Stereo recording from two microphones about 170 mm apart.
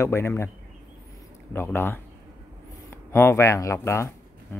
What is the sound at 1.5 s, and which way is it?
Speech, 15° left (ahead or behind).